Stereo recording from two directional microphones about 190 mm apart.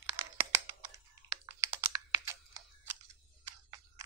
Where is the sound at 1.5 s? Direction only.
15° right (ahead or behind).